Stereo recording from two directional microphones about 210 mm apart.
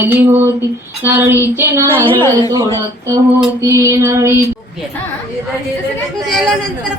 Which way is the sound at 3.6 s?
15° right (ahead or behind).